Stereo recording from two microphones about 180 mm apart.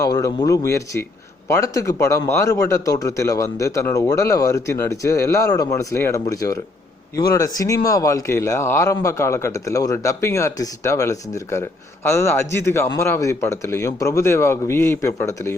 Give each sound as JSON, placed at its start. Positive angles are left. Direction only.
{"t": 0.0, "sound": "a man's voice", "side_deg": 20}